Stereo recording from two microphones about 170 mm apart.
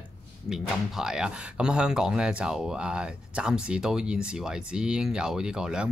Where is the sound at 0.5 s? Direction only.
5° right (ahead or behind).